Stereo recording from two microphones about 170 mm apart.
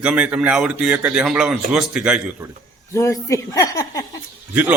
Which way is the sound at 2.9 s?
20° left (ahead or behind).